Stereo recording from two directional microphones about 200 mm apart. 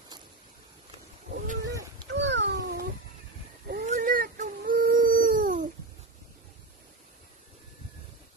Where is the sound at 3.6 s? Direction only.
45° right (ahead or behind).